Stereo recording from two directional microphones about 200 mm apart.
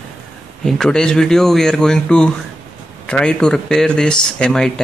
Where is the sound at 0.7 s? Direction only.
5° left (ahead or behind).